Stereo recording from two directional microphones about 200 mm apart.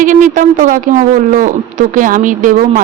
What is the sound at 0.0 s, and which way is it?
Speech, 40° right (ahead or behind).